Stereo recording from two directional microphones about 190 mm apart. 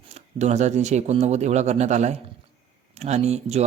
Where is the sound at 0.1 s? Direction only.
35° right (ahead or behind).